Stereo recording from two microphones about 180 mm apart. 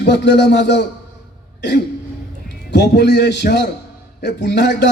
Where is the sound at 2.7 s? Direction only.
70° left (ahead or behind).